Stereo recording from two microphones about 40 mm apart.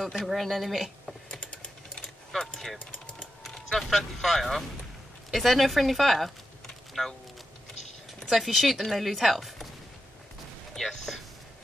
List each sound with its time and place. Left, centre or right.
0.2 s speech: centre
1.3 s typing: left
2.0 s typing: centre
3.5 s speech: centre
8.3 s speech: centre
10.8 s speech: centre